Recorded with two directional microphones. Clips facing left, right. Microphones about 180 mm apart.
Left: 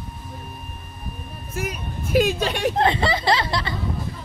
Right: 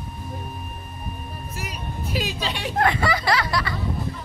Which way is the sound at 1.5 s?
50° left (ahead or behind).